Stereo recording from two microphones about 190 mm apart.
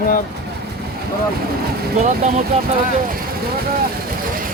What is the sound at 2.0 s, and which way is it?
Speech, 40° right (ahead or behind).